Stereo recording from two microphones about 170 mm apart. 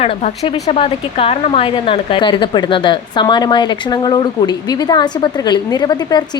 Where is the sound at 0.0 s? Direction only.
35° left (ahead or behind).